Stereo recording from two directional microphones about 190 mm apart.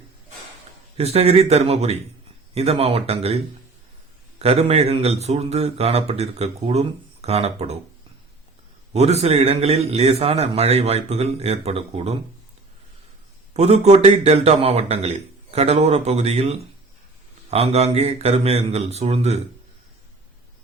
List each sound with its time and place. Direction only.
0.9 s speech: 30° right (ahead or behind)
8.9 s speech: 35° right (ahead or behind)
13.5 s speech: 35° right (ahead or behind)